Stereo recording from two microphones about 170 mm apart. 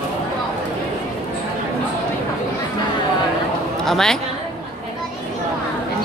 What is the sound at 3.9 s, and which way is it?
Speech, 5° left (ahead or behind).